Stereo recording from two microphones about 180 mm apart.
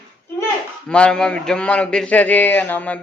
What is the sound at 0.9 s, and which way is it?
A man's voice, 5° left (ahead or behind).